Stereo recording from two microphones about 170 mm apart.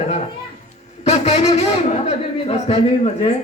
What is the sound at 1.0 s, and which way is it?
Speech, 40° left (ahead or behind).